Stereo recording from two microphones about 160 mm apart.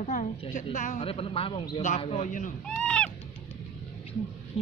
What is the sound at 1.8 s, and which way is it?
Speech, 45° left (ahead or behind).